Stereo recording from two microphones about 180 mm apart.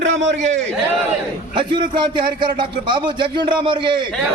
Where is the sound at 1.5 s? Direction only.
25° right (ahead or behind).